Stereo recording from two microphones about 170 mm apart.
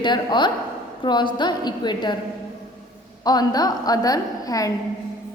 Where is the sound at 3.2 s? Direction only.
25° left (ahead or behind).